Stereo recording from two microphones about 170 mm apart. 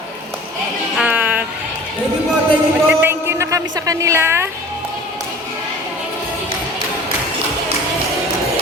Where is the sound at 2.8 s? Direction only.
15° right (ahead or behind).